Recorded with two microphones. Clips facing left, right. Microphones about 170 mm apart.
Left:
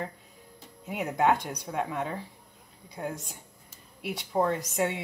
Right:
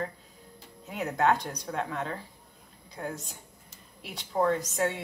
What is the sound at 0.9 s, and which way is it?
Speech, 15° left (ahead or behind).